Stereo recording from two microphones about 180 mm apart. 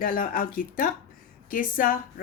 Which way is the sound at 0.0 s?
50° left (ahead or behind).